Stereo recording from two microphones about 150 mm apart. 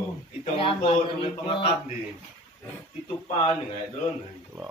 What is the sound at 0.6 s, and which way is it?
Speech, 40° left (ahead or behind).